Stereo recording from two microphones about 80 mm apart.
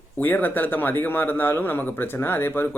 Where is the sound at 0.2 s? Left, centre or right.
Left.